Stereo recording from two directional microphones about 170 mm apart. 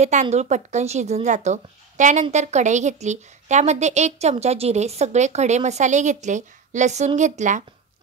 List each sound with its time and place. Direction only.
0.0 s a woman's voice: 40° right (ahead or behind)